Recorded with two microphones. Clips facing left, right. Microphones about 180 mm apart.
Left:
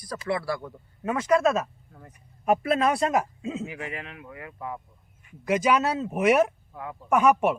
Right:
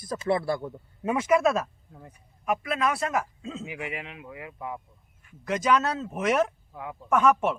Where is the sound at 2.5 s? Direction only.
35° left (ahead or behind); by 3.6 s 20° left (ahead or behind).